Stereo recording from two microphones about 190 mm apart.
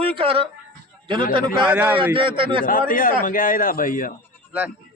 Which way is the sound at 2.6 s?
45° left (ahead or behind).